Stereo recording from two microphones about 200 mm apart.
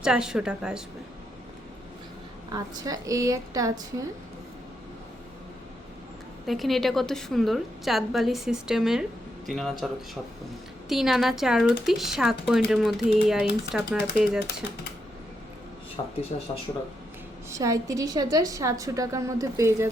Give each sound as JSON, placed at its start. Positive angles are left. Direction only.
{"t": 0.0, "sound": "speech", "side_deg": -5}
{"t": 2.5, "sound": "a woman's voice", "side_deg": -20}
{"t": 6.4, "sound": "speech", "side_deg": 0}
{"t": 16.0, "sound": "speech", "side_deg": 25}
{"t": 17.5, "sound": "a woman's voice", "side_deg": -15}